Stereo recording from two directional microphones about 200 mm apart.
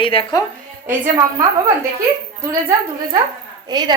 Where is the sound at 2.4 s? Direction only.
15° right (ahead or behind).